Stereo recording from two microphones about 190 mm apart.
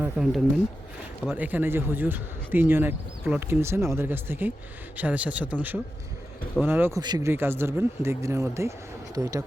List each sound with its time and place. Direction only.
0.0 s speech: centre (ahead or behind); by 9.4 s 20° right (ahead or behind)